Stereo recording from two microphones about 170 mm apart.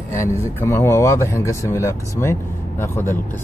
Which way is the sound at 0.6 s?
15° left (ahead or behind).